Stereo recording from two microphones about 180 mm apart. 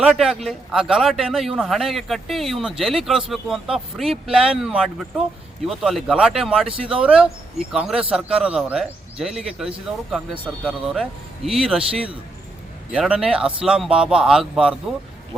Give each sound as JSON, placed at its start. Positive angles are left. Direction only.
{"t": 0.0, "sound": "speech", "side_deg": -5}